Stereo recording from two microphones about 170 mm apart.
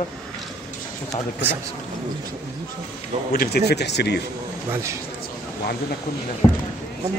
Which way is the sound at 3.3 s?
65° left (ahead or behind).